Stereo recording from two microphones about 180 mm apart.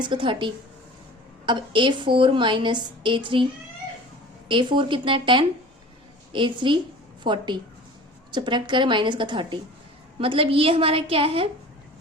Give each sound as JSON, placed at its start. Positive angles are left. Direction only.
{"t": 0.0, "sound": "a woman's voice", "side_deg": -25}
{"t": 4.4, "sound": "a woman's voice", "side_deg": -25}